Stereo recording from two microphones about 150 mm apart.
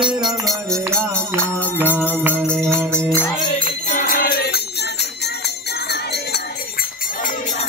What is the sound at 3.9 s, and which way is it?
Music, 65° left (ahead or behind).